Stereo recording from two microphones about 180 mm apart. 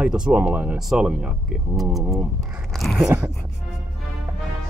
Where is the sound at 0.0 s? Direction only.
5° right (ahead or behind).